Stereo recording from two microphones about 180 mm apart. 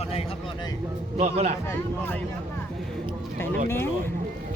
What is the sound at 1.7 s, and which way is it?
Speech, 10° left (ahead or behind).